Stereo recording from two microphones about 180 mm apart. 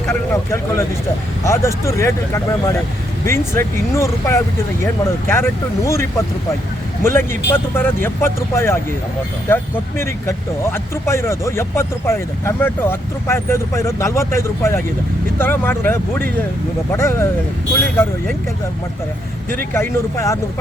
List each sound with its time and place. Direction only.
0.1 s speech: 15° left (ahead or behind)
19.7 s speech: 15° left (ahead or behind)